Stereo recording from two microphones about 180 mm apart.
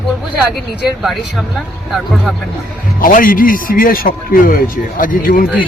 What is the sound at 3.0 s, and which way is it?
Speech, 50° left (ahead or behind).